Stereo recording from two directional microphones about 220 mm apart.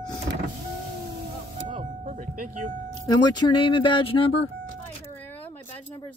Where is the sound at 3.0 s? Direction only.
20° left (ahead or behind).